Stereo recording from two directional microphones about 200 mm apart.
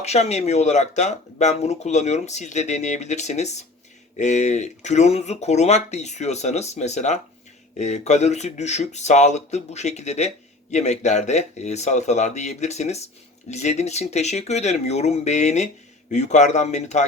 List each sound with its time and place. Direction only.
0.0 s speech: 35° left (ahead or behind)